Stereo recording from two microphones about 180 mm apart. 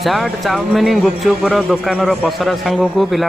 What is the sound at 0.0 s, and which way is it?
A man's voice, centre (ahead or behind).